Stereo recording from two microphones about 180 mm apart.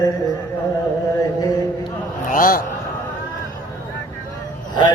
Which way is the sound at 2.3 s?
50° left (ahead or behind).